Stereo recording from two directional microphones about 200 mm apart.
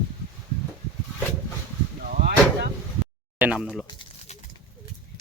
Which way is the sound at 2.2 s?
50° right (ahead or behind).